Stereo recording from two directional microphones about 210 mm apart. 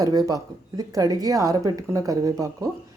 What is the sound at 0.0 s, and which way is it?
A woman's voice, 15° right (ahead or behind).